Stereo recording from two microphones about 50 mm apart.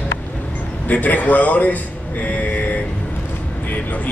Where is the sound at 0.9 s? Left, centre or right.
Left.